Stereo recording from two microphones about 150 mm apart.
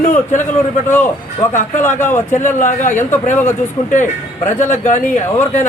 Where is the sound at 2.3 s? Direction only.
55° left (ahead or behind).